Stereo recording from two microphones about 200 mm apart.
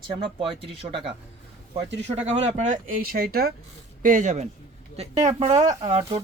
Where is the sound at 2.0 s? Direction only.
35° right (ahead or behind).